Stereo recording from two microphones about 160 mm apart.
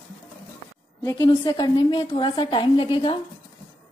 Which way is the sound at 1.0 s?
25° left (ahead or behind).